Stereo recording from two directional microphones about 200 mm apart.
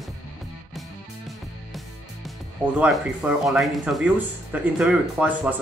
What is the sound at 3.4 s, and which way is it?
Speech, centre (ahead or behind).